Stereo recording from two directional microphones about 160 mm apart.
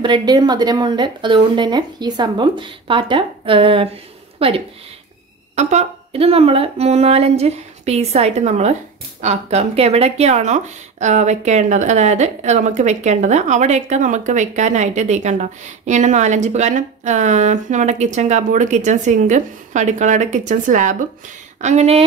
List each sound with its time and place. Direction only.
0.0 s speech: 30° right (ahead or behind)
5.6 s a woman's voice: 45° right (ahead or behind)